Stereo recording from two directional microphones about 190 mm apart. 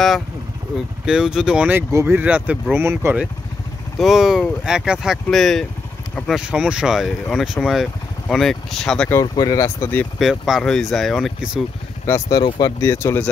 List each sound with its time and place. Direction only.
1.0 s speech: 5° right (ahead or behind)
4.0 s speech: centre (ahead or behind)
9.2 s speech: 20° left (ahead or behind)
10.1 s speech: centre (ahead or behind)
12.1 s speech: 20° left (ahead or behind)